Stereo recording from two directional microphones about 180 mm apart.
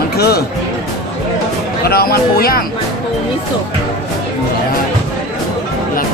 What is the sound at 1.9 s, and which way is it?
Speech, 60° left (ahead or behind).